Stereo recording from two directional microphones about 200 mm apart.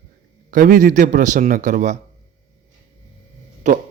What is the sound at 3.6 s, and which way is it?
Speech, 35° right (ahead or behind).